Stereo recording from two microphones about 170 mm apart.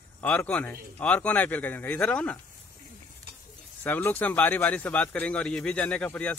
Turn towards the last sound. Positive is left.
turn(degrees=10)  # may be behind; listen again after turning